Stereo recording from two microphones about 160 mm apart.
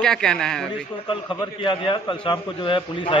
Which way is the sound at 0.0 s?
5° left (ahead or behind).